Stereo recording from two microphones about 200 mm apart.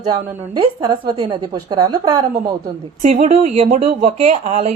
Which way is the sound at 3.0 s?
35° right (ahead or behind).